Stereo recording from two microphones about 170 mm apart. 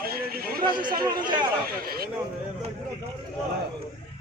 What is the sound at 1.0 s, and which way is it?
Speech, 25° right (ahead or behind).